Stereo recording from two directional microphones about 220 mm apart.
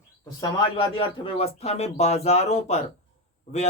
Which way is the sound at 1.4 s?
30° left (ahead or behind).